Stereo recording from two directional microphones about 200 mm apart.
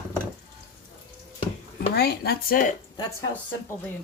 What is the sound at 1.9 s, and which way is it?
Speech, 50° left (ahead or behind).